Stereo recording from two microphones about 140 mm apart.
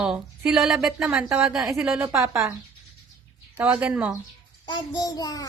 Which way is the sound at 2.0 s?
20° right (ahead or behind).